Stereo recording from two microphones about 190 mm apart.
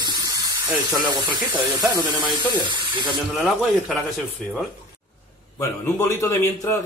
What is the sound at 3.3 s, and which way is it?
Speech, centre (ahead or behind).